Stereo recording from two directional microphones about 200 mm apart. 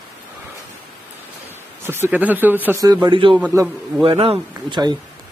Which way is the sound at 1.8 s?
10° right (ahead or behind).